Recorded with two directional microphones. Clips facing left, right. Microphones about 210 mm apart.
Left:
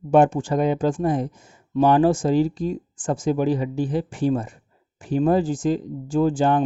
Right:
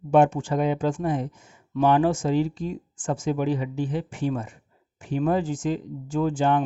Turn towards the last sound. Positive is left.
turn(degrees=35)  # may be behind; listen again after turning